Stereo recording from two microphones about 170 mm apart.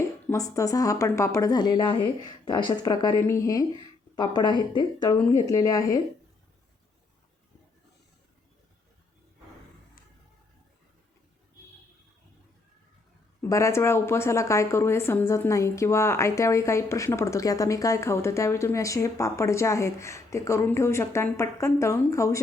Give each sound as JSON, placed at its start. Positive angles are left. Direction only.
{"t": 0.3, "sound": "a woman's voice", "side_deg": 20}
{"t": 13.4, "sound": "a woman's voice", "side_deg": 15}